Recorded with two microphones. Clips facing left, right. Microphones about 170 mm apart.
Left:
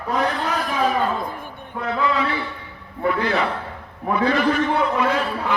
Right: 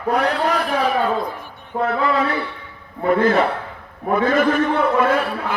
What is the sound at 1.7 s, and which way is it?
A man's voice, 50° right (ahead or behind).